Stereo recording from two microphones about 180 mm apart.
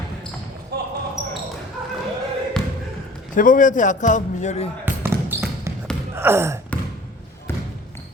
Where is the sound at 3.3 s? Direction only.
45° left (ahead or behind).